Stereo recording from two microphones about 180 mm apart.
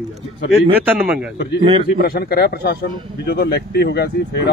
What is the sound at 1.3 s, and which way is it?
Speech, 65° left (ahead or behind).